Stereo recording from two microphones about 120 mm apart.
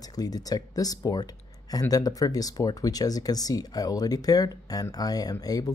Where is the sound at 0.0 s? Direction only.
30° left (ahead or behind).